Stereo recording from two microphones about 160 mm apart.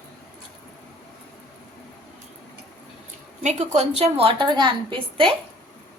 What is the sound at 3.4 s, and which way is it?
A woman's voice, 45° right (ahead or behind).